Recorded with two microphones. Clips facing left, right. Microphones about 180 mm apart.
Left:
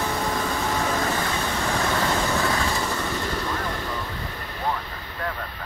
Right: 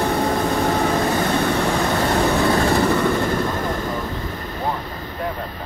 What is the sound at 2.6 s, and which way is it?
Train, 60° right (ahead or behind).